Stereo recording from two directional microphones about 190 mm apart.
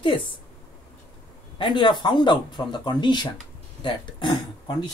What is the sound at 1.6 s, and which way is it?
Speech, 25° left (ahead or behind).